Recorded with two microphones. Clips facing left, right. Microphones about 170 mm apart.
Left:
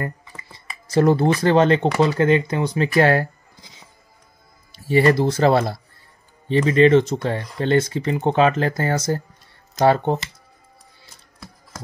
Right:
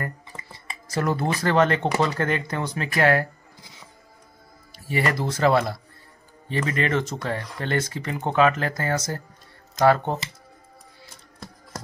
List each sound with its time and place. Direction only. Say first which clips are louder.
0.8 s speech: left 8 dB; 30° left (ahead or behind)
3.0 s speech: left 3 dB; 30° left (ahead or behind)
4.7 s speech: left 9 dB; 30° left (ahead or behind)